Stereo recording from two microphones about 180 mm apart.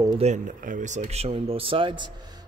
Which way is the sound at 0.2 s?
45° right (ahead or behind).